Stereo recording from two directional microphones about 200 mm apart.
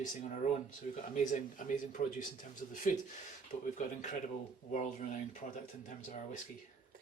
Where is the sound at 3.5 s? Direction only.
35° left (ahead or behind).